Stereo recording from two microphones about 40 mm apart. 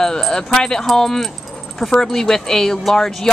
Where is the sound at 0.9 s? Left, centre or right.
Centre.